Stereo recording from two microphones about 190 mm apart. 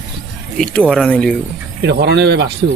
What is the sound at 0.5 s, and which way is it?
Speech, 5° left (ahead or behind).